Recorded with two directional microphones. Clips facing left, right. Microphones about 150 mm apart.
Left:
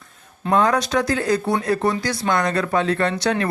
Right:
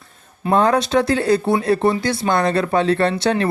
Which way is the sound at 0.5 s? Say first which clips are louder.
Right 3 dB; 30° right (ahead or behind).